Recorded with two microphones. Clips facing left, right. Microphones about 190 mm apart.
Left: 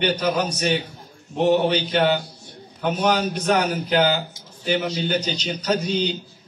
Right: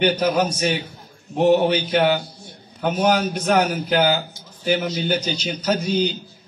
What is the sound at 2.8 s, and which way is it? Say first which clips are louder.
Speech: right 2 dB; 50° right (ahead or behind).